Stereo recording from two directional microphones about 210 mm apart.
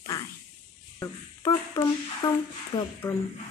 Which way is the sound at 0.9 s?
15° left (ahead or behind).